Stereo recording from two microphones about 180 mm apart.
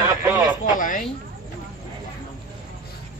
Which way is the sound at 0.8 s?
45° left (ahead or behind).